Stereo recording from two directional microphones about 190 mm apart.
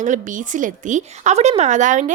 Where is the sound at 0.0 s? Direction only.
40° right (ahead or behind).